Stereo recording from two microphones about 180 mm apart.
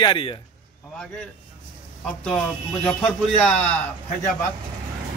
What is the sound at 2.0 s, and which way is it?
Speech, 5° left (ahead or behind).